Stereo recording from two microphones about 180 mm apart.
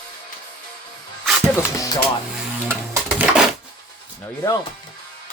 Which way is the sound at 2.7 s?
10° right (ahead or behind).